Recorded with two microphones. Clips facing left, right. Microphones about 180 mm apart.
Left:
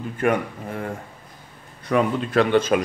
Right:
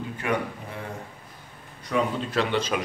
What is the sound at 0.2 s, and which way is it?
Speech, 50° left (ahead or behind).